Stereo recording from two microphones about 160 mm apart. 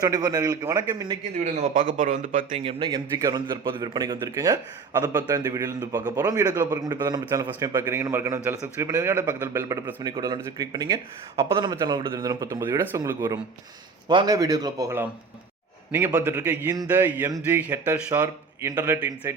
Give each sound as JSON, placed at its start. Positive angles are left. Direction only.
{"t": 0.0, "sound": "a man's voice", "side_deg": -25}
{"t": 1.5, "sound": "a man's voice", "side_deg": -50}
{"t": 2.6, "sound": "a man's voice", "side_deg": -35}
{"t": 2.9, "sound": "a man's voice", "side_deg": -20}
{"t": 14.1, "sound": "a man's voice", "side_deg": -30}
{"t": 18.7, "sound": "a man's voice", "side_deg": -20}
{"t": 18.9, "sound": "speech", "side_deg": -10}